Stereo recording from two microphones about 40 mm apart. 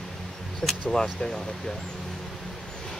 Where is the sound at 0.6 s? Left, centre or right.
Centre.